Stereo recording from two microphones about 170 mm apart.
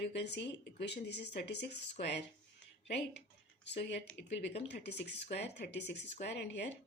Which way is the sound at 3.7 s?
80° left.